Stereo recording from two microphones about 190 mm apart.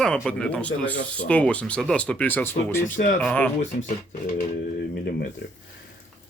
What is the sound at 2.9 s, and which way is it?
Speech, 45° left (ahead or behind).